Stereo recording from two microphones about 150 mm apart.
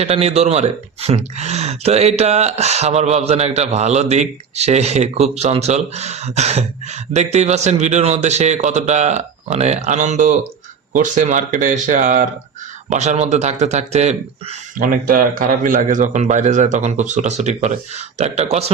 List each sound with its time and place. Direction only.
0.0 s speech: 45° right (ahead or behind)
14.8 s speech: 70° right (ahead or behind); by 18.6 s 45° right (ahead or behind)